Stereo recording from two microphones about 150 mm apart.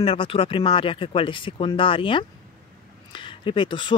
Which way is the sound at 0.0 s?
35° left (ahead or behind).